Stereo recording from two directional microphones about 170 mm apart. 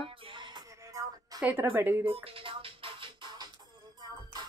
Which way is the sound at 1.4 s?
10° right (ahead or behind).